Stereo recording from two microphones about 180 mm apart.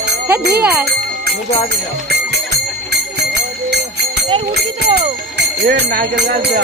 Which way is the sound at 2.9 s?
70° right (ahead or behind).